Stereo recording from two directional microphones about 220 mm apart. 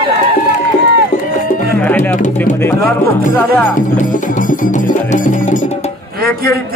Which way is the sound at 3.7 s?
35° left (ahead or behind).